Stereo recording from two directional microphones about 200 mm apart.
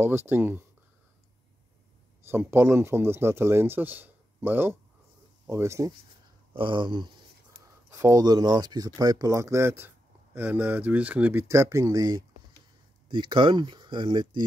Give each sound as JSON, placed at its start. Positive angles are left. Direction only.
{"t": 0.0, "sound": "speech", "side_deg": -10}
{"t": 2.2, "sound": "speech", "side_deg": -10}